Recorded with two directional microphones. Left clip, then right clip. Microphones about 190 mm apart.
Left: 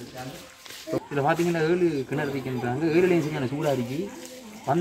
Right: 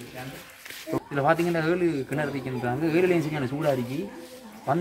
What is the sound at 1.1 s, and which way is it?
Speech, 15° right (ahead or behind).